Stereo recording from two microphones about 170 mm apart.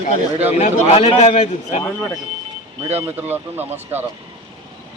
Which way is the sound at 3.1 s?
10° right (ahead or behind).